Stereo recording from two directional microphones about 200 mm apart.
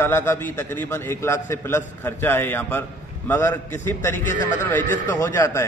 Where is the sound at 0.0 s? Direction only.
10° left (ahead or behind).